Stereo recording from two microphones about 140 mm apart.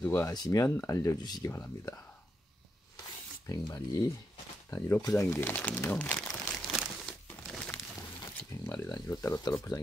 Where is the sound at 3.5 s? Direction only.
25° left (ahead or behind).